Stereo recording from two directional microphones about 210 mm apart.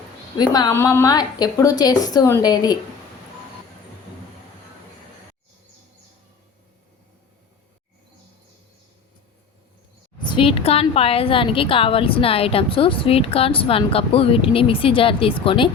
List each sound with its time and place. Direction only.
0.3 s a woman's voice: 20° left (ahead or behind)
10.2 s a woman's voice: 25° left (ahead or behind)